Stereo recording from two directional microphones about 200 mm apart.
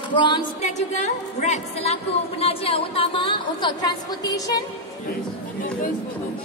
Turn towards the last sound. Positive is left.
turn(degrees=20)  # may be behind; listen again after turning